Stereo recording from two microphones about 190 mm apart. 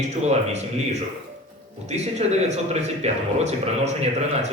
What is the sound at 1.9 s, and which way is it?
A man's voice, 35° right (ahead or behind).